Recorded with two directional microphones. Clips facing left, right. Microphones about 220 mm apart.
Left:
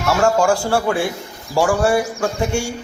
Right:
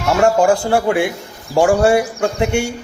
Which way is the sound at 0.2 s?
20° right (ahead or behind).